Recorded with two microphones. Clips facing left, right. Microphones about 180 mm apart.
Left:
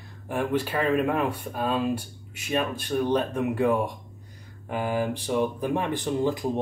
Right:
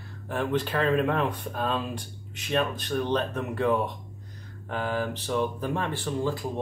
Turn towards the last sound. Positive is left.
turn(degrees=20)  # may be behind; listen again after turning